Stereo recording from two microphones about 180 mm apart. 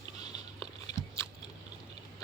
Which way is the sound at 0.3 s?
20° left (ahead or behind).